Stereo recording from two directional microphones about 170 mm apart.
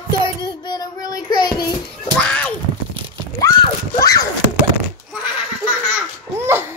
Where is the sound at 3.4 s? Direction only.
20° left (ahead or behind).